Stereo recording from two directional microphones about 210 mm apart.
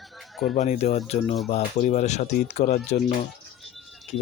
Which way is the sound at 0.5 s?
35° left (ahead or behind).